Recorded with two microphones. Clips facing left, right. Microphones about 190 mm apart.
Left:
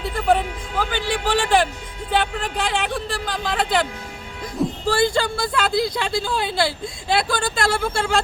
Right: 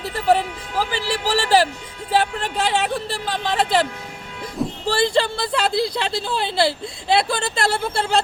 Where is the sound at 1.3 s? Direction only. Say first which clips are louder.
Right 1 dB; 35° right (ahead or behind).